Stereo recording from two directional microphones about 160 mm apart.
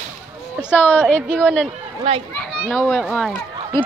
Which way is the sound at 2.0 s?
35° right (ahead or behind).